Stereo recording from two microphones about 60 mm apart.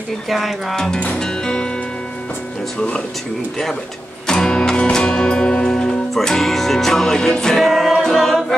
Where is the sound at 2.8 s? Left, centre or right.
Centre.